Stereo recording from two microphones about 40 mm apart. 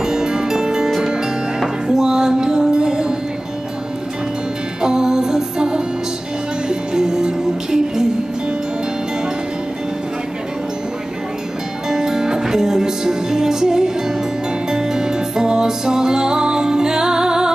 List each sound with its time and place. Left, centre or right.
0.0 s music: centre
4.8 s music: centre
11.9 s music: centre